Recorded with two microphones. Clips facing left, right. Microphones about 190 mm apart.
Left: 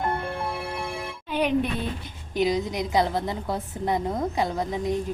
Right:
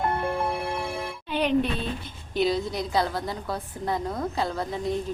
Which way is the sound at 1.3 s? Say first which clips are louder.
Even; 10° left (ahead or behind).